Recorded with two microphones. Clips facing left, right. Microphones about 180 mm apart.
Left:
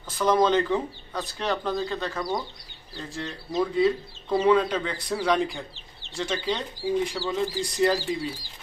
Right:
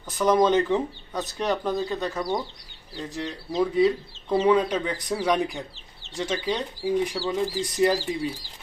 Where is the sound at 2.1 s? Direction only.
Centre (ahead or behind).